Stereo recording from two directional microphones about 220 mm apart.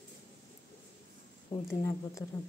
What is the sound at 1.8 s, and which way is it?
Speech, 15° left (ahead or behind).